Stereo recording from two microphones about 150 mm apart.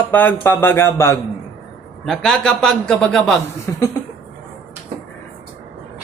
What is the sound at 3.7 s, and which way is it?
Cough, 15° left (ahead or behind).